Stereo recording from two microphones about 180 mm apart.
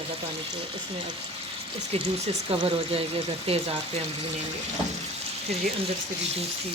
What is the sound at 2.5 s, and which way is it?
Speech, 30° right (ahead or behind).